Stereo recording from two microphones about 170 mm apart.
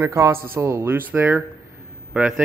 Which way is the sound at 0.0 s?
15° right (ahead or behind).